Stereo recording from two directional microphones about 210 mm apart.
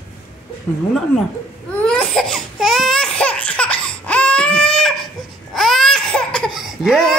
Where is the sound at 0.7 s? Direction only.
5° left (ahead or behind).